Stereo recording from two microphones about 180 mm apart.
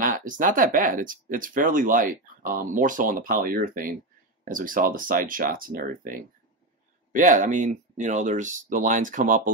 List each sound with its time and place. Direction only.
0.0 s speech: 50° right (ahead or behind)